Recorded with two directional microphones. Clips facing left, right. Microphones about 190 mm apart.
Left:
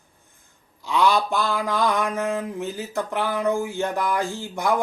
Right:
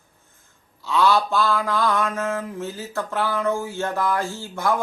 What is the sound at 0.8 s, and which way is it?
Speech, 15° left (ahead or behind).